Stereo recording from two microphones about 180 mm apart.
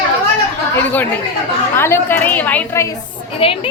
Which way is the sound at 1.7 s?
15° left (ahead or behind).